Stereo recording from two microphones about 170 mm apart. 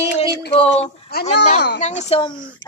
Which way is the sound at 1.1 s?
70° left (ahead or behind).